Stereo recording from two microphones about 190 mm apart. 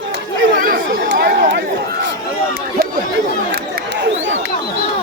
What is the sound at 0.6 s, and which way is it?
Chatter, 65° right (ahead or behind).